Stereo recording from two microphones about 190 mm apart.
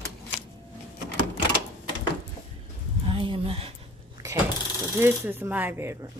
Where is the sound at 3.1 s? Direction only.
30° right (ahead or behind).